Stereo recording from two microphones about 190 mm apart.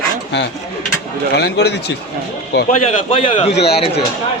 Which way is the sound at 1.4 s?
60° left (ahead or behind).